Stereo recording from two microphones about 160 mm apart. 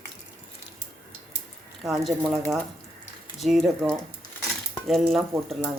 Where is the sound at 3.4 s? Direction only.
Centre (ahead or behind).